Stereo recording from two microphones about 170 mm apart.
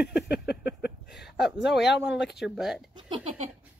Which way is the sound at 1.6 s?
90° left.